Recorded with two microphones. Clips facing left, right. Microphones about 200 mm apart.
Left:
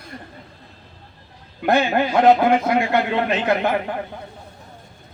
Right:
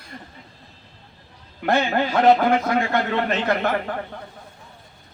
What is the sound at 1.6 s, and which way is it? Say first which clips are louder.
A man's voice: left 2 dB; 15° left (ahead or behind).